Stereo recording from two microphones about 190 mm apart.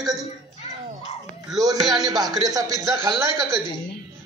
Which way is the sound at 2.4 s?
20° right (ahead or behind).